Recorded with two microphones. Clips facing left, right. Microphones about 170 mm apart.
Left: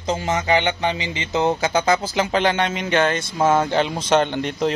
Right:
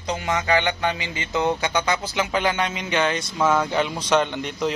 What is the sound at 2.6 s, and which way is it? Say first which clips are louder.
Speech: left 4 dB; 50° left (ahead or behind).